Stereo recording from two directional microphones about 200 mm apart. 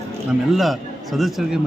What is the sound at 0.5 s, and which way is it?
A man's voice, centre (ahead or behind).